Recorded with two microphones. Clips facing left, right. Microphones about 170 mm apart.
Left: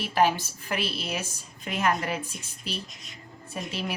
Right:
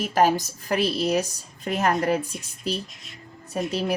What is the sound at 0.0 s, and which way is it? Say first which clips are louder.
A woman's voice: right 3 dB; 45° right (ahead or behind).